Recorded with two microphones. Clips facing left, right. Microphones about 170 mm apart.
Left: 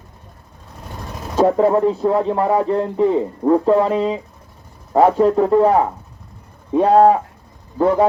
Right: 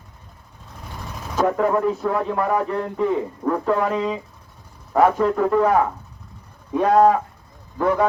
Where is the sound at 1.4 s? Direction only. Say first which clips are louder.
Left 5 dB; 30° left (ahead or behind).